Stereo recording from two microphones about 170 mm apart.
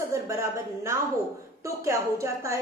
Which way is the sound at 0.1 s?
15° right (ahead or behind).